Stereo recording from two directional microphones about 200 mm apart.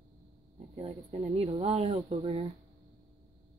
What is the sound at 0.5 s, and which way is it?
Speech, 30° right (ahead or behind).